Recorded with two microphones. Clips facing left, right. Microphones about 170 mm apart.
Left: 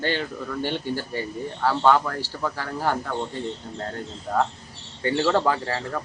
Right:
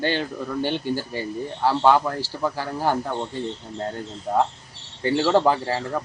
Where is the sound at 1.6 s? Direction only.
15° right (ahead or behind).